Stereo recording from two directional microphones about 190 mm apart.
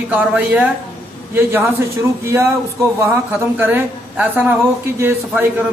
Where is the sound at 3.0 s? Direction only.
10° right (ahead or behind).